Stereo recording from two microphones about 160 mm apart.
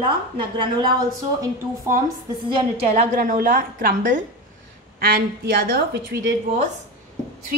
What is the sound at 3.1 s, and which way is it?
A woman's voice, 60° right (ahead or behind).